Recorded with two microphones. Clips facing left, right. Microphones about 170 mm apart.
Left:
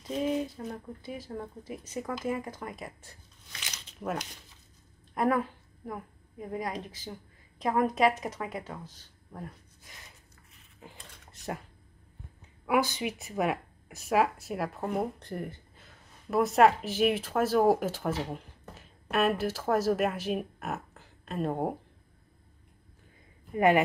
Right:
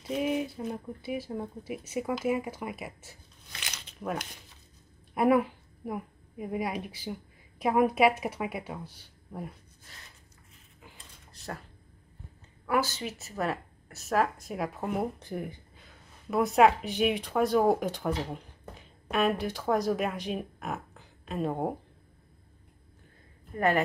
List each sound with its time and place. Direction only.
0.0 s speech: 10° right (ahead or behind)
4.0 s speech: 5° left (ahead or behind)
5.1 s a woman's voice: 10° right (ahead or behind)
12.6 s speech: 15° left (ahead or behind)
23.5 s speech: 15° left (ahead or behind)